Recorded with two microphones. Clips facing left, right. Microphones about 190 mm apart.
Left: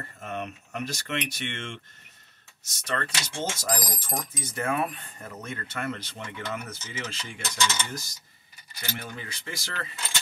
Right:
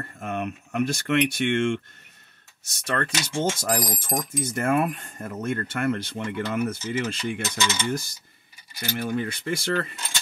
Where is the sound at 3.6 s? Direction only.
50° right (ahead or behind).